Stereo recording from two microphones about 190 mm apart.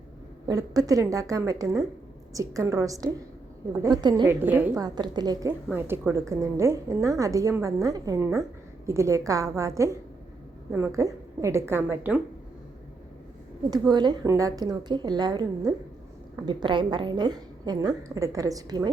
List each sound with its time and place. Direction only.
0.4 s a woman's voice: 20° right (ahead or behind)
4.3 s a woman's voice: 10° right (ahead or behind)
13.7 s a woman's voice: 20° right (ahead or behind)